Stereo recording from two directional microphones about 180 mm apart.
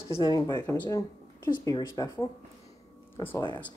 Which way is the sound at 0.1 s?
25° left (ahead or behind).